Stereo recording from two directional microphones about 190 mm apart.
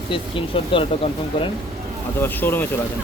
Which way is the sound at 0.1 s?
25° left (ahead or behind).